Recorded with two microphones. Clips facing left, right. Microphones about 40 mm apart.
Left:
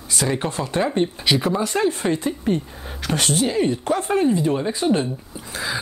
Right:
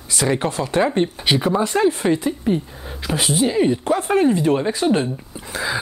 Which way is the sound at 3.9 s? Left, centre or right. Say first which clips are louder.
Right 1 dB; right.